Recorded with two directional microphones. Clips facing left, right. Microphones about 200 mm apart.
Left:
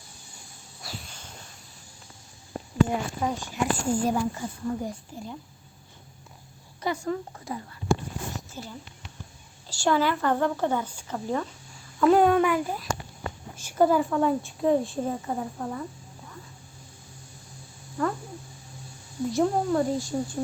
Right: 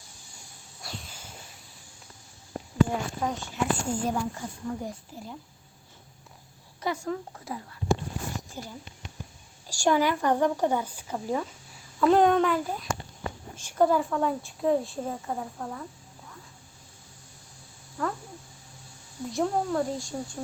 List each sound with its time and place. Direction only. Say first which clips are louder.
0.8 s a sound: even; centre (ahead or behind)
2.9 s speech: left 2 dB; 10° left (ahead or behind)
6.8 s speech: left 2 dB; centre (ahead or behind)
8.6 s a woman's voice: even; 15° right (ahead or behind)
11.9 s a child's voice: left 1 dB; 5° left (ahead or behind)
18.0 s speech: left 4 dB; centre (ahead or behind)
19.3 s speech: left 3 dB; centre (ahead or behind)